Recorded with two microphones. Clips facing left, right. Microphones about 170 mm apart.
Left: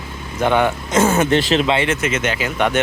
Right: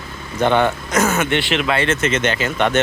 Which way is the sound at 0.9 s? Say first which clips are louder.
Left 3 dB; 30° left (ahead or behind).